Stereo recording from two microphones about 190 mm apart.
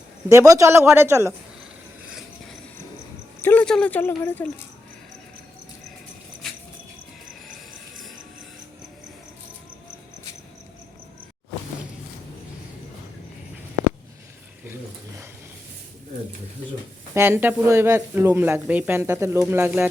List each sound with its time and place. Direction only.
0.3 s speech: 15° right (ahead or behind)
3.4 s speech: 10° left (ahead or behind)
14.7 s a sound: 15° right (ahead or behind)
17.2 s speech: 10° right (ahead or behind)